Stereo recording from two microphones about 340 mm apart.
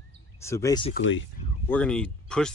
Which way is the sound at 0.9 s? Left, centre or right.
Left.